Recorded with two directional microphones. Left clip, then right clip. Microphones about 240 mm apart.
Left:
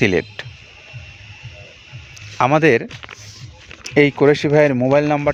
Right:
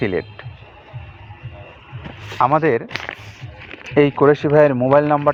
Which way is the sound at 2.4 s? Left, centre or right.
Left.